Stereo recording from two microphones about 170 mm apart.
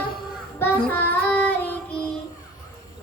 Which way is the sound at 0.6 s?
10° left (ahead or behind).